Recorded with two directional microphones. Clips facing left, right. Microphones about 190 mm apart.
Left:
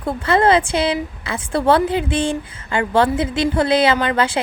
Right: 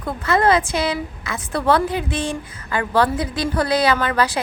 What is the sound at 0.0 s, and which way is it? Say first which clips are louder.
A woman's voice: left 2 dB; 30° left (ahead or behind).